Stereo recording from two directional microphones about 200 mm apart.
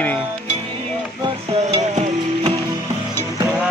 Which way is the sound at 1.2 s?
30° right (ahead or behind).